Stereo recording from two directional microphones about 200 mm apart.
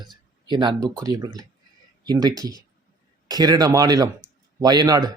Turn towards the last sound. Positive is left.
turn(degrees=-20)  # may be behind; listen again after turning